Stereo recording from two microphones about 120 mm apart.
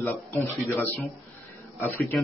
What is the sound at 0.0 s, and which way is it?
A man's voice, 15° left (ahead or behind).